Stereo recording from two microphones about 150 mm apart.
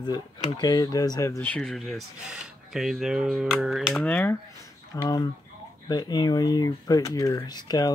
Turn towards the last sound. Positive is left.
turn(degrees=25)  # may be behind; listen again after turning